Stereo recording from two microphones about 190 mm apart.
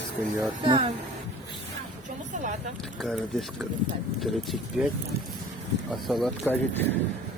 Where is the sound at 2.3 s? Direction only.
40° right (ahead or behind).